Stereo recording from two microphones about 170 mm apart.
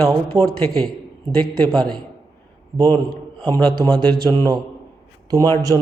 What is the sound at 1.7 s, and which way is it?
Speech, 25° right (ahead or behind).